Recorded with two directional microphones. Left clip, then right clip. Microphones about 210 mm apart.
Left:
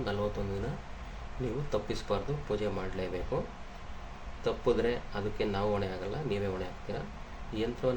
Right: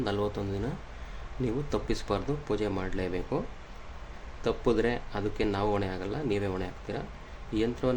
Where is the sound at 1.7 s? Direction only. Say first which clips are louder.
Left 1 dB; 50° right (ahead or behind).